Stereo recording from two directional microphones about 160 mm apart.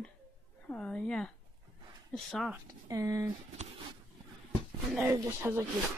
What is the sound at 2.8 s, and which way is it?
Speech, 20° right (ahead or behind).